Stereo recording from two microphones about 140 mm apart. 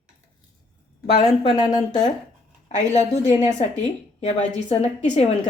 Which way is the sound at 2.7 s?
55° left (ahead or behind).